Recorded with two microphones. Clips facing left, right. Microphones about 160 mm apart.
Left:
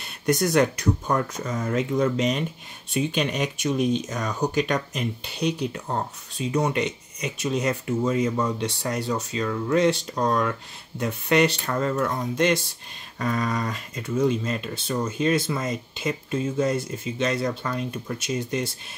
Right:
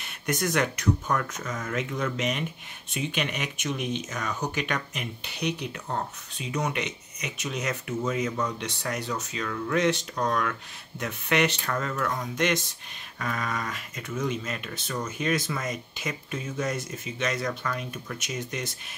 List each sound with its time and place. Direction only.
0.0 s speech: 35° left (ahead or behind)